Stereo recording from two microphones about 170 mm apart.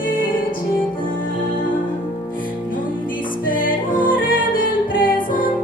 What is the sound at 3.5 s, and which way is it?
Music, 55° left (ahead or behind).